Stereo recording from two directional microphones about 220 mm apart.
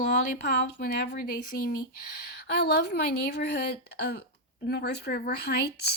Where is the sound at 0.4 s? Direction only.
50° left (ahead or behind).